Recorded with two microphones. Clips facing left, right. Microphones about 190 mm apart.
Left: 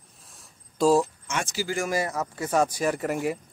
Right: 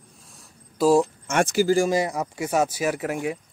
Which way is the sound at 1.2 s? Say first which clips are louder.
Right 9 dB; 55° right (ahead or behind).